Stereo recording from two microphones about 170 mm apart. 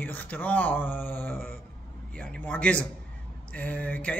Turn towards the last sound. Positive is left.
turn(degrees=10)  # may be behind; listen again after turning